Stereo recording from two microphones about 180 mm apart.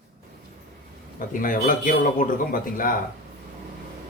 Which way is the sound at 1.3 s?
50° left (ahead or behind).